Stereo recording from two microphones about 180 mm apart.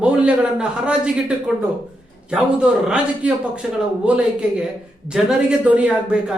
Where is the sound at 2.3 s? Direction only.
5° right (ahead or behind).